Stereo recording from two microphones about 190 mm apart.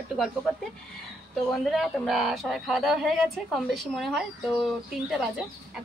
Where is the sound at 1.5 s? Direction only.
Centre (ahead or behind).